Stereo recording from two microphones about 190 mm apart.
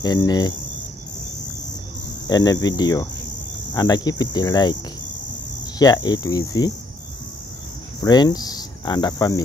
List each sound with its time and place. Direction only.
0.0 s cricket: 20° left (ahead or behind)
2.2 s cricket: 20° left (ahead or behind)
5.8 s cricket: 20° left (ahead or behind)
8.0 s cricket: 20° left (ahead or behind)